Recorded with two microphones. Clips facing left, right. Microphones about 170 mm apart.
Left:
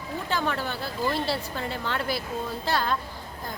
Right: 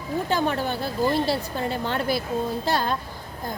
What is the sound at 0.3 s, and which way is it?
A woman's voice, 15° right (ahead or behind).